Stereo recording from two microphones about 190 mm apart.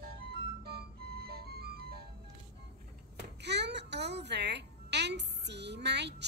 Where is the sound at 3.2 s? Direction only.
65° right (ahead or behind).